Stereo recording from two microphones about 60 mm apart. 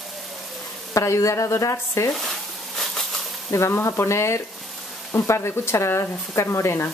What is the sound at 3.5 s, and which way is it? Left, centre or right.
Speech, left.